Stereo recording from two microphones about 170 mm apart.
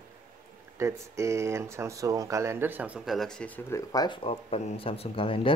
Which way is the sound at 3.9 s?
25° left (ahead or behind).